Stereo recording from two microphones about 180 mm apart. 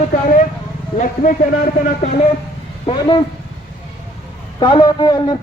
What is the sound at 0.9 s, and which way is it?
Speech, 45° left (ahead or behind).